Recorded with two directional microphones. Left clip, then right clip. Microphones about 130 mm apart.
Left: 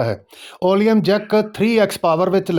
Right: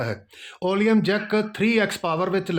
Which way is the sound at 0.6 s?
45° left (ahead or behind).